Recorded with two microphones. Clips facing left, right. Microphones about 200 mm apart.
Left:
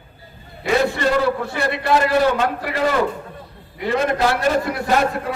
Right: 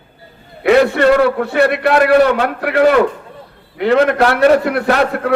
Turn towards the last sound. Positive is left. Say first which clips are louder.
# right 4 dB
turn(degrees=-65)  # may be behind; listen again after turning